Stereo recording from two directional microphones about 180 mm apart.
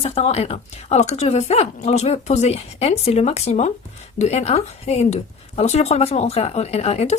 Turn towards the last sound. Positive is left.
turn(degrees=35)  # may be behind; listen again after turning